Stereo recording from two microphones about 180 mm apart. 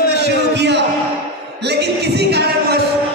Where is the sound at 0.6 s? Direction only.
75° right (ahead or behind).